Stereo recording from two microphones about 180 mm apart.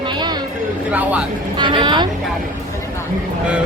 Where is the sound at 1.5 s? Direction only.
25° right (ahead or behind).